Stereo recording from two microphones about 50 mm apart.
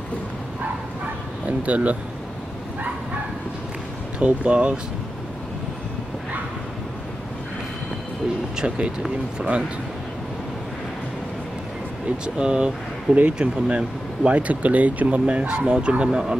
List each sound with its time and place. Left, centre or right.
1.4 s speech: right
4.2 s speech: right
8.5 s speech: right
12.4 s speech: centre